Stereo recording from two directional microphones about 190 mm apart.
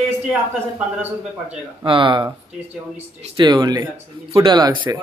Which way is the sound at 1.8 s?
25° right (ahead or behind).